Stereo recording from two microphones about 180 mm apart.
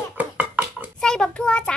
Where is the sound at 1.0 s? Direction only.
5° left (ahead or behind).